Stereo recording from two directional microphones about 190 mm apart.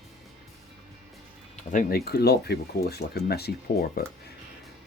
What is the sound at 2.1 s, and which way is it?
Speech, 60° left (ahead or behind).